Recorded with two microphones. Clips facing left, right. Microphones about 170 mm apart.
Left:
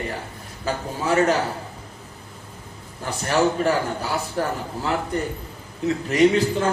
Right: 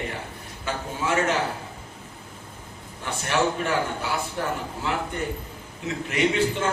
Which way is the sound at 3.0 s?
40° left (ahead or behind).